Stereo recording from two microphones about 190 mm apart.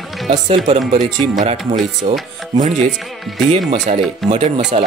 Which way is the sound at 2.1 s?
35° right (ahead or behind).